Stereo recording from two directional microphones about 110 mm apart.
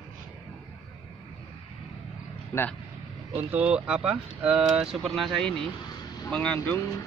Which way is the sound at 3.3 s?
15° right (ahead or behind).